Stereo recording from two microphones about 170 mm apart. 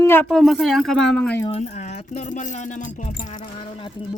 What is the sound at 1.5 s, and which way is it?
Music, 40° left (ahead or behind).